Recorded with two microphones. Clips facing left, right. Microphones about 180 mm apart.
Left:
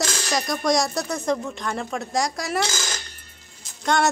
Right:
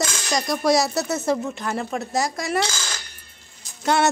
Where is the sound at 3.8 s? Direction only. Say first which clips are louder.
Right 1 dB; 5° right (ahead or behind).